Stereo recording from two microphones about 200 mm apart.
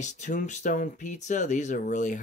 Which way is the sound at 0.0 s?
35° left (ahead or behind).